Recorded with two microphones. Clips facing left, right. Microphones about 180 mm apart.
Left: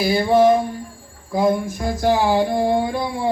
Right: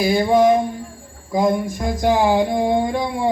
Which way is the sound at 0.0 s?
Centre (ahead or behind).